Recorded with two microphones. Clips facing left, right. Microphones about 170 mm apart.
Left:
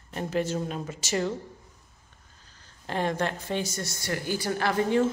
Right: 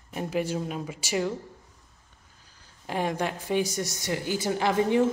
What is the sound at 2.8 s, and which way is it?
A woman's voice, 10° right (ahead or behind).